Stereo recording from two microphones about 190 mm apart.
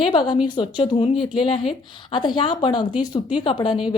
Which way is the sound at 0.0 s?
25° left (ahead or behind).